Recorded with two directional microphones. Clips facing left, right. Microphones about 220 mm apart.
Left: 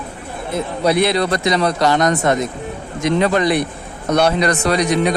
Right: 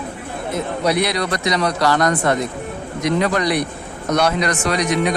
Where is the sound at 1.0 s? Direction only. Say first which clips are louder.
Left 4 dB; 30° left (ahead or behind).